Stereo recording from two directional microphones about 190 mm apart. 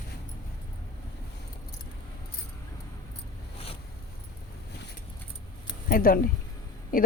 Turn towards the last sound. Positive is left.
turn(degrees=45)  # may be behind; listen again after turning